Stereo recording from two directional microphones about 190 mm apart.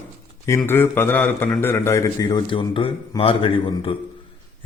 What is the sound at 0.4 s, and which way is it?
A man's voice, 15° left (ahead or behind).